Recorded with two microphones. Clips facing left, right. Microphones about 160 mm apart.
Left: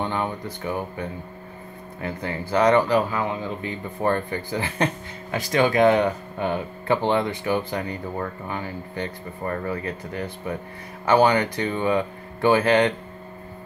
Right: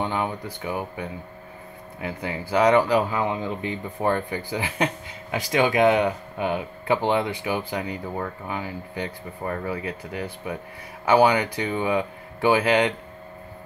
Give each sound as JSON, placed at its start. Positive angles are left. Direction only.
{"t": 0.0, "sound": "speech", "side_deg": -10}